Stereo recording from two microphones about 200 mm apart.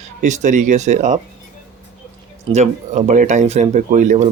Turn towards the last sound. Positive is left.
turn(degrees=-40)  # may be behind; listen again after turning